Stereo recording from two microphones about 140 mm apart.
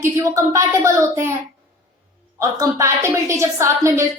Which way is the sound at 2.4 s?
25° right (ahead or behind).